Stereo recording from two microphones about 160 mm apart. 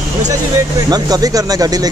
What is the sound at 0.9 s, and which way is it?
Speech, 25° right (ahead or behind).